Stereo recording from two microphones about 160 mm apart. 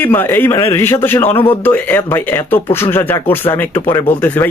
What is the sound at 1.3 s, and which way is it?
Speech, 35° left (ahead or behind).